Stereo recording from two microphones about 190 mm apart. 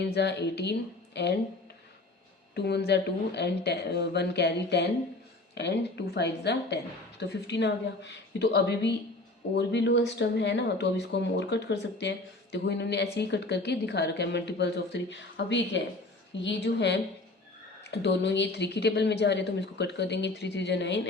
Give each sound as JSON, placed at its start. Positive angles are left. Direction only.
{"t": 0.0, "sound": "speech", "side_deg": 65}
{"t": 2.6, "sound": "speech", "side_deg": 60}